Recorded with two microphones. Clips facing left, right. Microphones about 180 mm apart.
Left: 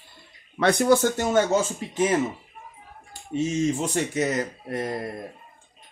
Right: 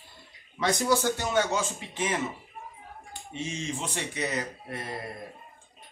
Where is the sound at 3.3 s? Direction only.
40° left (ahead or behind).